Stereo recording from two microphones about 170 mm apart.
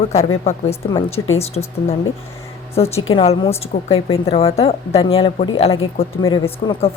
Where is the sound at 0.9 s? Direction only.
35° left (ahead or behind).